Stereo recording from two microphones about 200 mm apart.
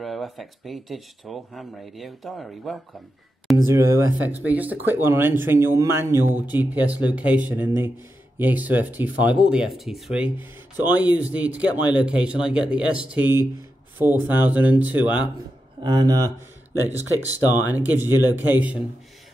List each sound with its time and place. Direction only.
0.0 s speech: centre (ahead or behind)
3.6 s speech: 15° right (ahead or behind)
15.8 s speech: 20° right (ahead or behind)
17.5 s speech: 10° right (ahead or behind)